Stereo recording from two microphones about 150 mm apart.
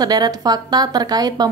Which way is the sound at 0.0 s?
25° right (ahead or behind).